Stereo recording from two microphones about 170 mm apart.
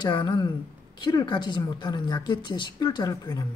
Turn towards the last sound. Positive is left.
turn(degrees=25)  # may be behind; listen again after turning